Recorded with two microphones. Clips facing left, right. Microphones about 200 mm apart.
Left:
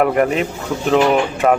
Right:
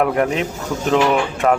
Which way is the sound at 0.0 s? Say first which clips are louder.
Left 2 dB; 5° left (ahead or behind).